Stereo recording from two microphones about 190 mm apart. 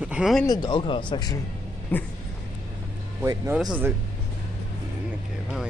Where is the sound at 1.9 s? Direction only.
10° left (ahead or behind).